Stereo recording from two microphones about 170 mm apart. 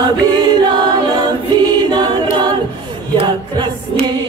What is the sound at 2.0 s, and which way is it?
A capella, 25° right (ahead or behind).